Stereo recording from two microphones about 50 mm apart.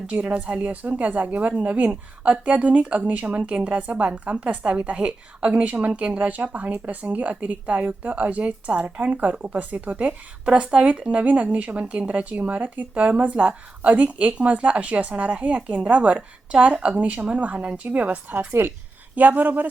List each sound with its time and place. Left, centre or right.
0.1 s speech: right
18.3 s a woman's voice: right
19.1 s a man's voice: right